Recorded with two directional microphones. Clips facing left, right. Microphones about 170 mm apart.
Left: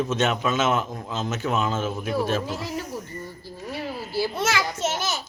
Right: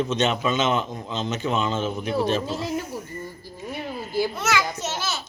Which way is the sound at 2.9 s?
10° right (ahead or behind).